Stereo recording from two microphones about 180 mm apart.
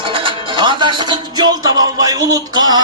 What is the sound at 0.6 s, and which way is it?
Speech, 25° right (ahead or behind).